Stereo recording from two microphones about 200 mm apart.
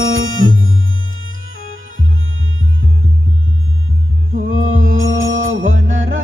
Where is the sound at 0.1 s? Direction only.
85° right.